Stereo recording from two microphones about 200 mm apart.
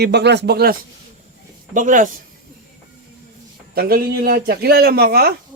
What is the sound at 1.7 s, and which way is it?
Speech, 40° right (ahead or behind).